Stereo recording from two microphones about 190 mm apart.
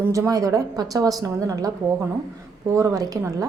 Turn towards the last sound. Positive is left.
turn(degrees=-20)  # may be behind; listen again after turning